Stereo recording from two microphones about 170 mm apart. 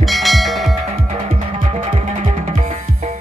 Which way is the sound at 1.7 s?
40° right (ahead or behind).